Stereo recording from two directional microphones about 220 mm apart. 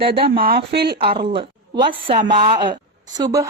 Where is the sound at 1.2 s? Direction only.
25° right (ahead or behind).